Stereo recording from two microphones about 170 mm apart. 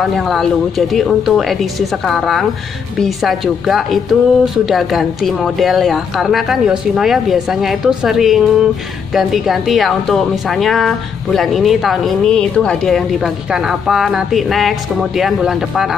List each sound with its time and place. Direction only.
0.0 s speech: centre (ahead or behind)